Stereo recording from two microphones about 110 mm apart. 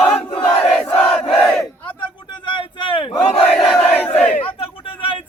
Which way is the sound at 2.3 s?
45° left (ahead or behind).